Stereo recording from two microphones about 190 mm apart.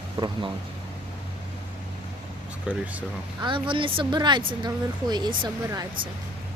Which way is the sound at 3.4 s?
25° right (ahead or behind).